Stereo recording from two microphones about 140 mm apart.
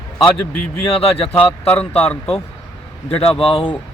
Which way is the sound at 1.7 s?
10° left (ahead or behind).